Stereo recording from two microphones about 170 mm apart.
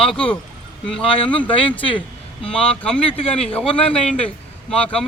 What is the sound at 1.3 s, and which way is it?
Speech, 10° left (ahead or behind).